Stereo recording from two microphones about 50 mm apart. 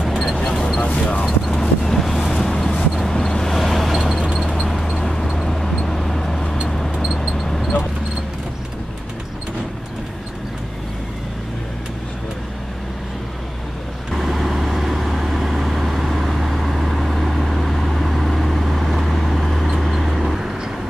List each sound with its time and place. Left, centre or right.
0.1 s single-lens reflex camera: centre
0.8 s a sound: centre
1.5 s vehicle: centre
2.7 s vehicle: centre
3.1 s vehicle: centre
7.2 s a sound: centre
14.1 s vehicle: centre